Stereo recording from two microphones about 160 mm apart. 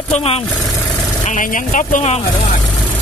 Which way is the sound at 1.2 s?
55° left (ahead or behind).